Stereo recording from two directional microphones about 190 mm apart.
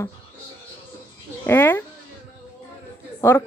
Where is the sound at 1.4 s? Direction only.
10° left (ahead or behind).